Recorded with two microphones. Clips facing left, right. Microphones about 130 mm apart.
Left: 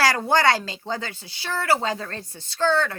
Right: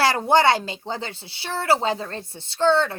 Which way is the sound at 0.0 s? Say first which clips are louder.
Right 2 dB; 25° right (ahead or behind).